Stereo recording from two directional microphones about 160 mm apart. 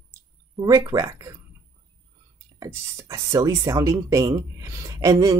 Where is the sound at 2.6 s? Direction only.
20° right (ahead or behind).